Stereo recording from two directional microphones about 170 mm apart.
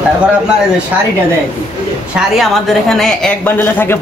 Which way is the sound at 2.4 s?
Centre (ahead or behind).